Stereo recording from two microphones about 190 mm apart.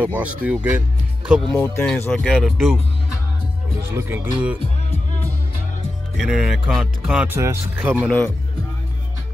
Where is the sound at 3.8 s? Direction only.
10° right (ahead or behind).